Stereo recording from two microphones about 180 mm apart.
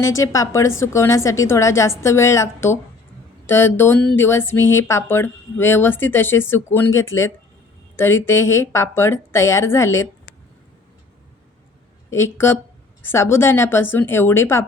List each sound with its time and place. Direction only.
0.2 s speech: 15° left (ahead or behind)
12.1 s speech: 15° left (ahead or behind)